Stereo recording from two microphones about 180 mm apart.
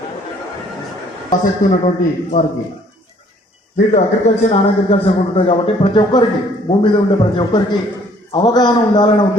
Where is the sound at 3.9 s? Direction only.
40° left (ahead or behind).